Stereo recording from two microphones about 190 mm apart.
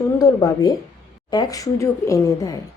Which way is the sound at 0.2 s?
15° left (ahead or behind).